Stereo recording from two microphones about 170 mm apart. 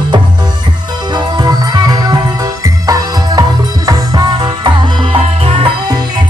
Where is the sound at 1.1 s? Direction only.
25° right (ahead or behind).